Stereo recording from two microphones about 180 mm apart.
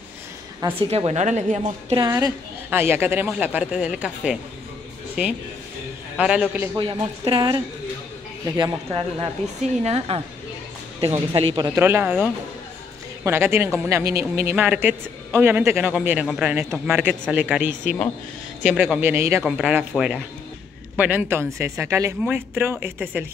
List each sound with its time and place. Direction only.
0.7 s a woman's voice: 35° right (ahead or behind)
2.0 s speech: 20° right (ahead or behind)
6.8 s a woman's voice: 30° right (ahead or behind)
11.7 s speech: 10° right (ahead or behind)
19.4 s speech: 5° right (ahead or behind)